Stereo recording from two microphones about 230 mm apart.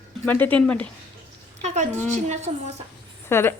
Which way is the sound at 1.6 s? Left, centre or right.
Right.